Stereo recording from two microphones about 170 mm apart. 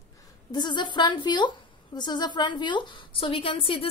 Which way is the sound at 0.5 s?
25° left (ahead or behind).